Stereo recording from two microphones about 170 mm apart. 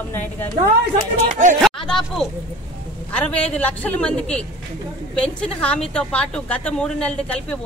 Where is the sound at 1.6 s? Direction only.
5° left (ahead or behind).